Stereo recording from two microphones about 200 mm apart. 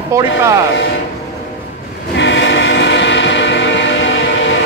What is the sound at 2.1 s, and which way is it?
Train, 65° left (ahead or behind).